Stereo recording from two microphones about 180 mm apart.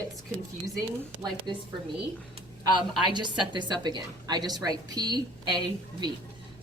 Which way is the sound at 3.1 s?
25° right (ahead or behind).